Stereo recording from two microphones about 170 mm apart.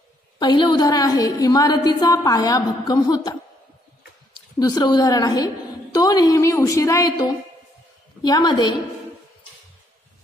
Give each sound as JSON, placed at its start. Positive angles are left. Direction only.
{"t": 0.4, "sound": "a woman's voice", "side_deg": 25}
{"t": 4.6, "sound": "a woman's voice", "side_deg": 25}